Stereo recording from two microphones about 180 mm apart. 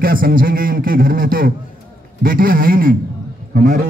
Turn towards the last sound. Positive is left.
turn(degrees=-50)  # may be behind; listen again after turning